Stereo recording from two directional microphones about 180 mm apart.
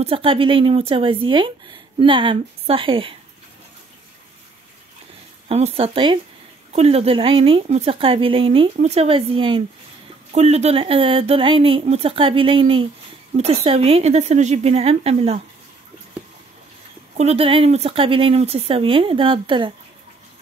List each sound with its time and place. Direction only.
0.0 s speech: 30° right (ahead or behind)
5.5 s speech: 35° right (ahead or behind)
17.2 s speech: 35° right (ahead or behind)